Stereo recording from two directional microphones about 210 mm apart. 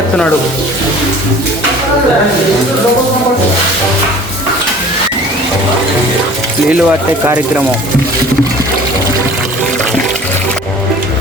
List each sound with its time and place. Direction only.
6.7 s speech: 5° right (ahead or behind)